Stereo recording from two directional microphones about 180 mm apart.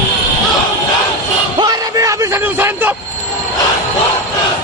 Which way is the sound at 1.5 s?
20° right (ahead or behind).